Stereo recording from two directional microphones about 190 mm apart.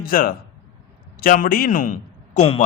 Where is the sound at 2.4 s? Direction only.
30° left (ahead or behind).